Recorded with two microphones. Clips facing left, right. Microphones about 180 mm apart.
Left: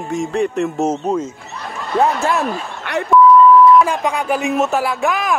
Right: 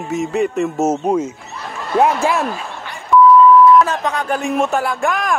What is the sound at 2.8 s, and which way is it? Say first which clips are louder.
Beep: left 11 dB; 65° left (ahead or behind).